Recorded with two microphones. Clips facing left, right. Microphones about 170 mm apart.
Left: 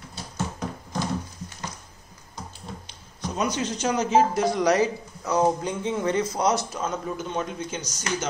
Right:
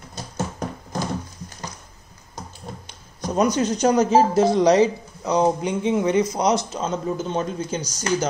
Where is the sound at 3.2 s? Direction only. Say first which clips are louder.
Right 7 dB; 40° right (ahead or behind).